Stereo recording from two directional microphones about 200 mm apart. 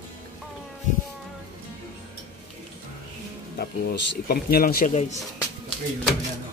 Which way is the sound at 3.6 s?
50° left (ahead or behind).